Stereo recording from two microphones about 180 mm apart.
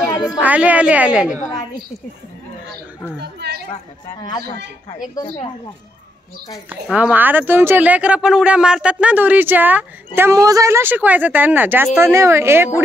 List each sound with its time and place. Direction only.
0.4 s a woman's voice: 10° right (ahead or behind)
1.4 s a sound: 20° left (ahead or behind)
3.2 s speech: 65° right (ahead or behind)
6.7 s a woman's voice: 10° right (ahead or behind)